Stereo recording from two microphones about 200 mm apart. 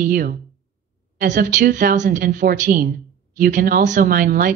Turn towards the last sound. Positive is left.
turn(degrees=-45)  # may be behind; listen again after turning